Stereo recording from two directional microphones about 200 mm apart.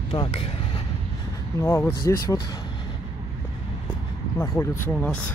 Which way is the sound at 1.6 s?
10° left (ahead or behind).